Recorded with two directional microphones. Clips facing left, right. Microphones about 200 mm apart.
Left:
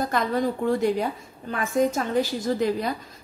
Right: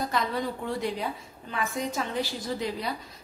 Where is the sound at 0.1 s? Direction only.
45° left (ahead or behind).